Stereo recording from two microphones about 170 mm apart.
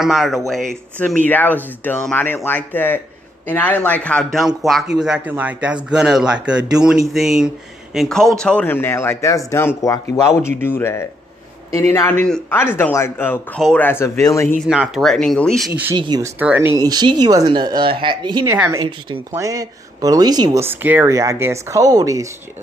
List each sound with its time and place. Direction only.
0.0 s speech: centre (ahead or behind); by 14.5 s 15° left (ahead or behind)
14.7 s speech: centre (ahead or behind)
15.7 s speech: 10° right (ahead or behind)
16.0 s speech: 25° right (ahead or behind)
16.3 s speech: 10° right (ahead or behind)
18.5 s speech: 15° right (ahead or behind)
20.6 s speech: 10° right (ahead or behind)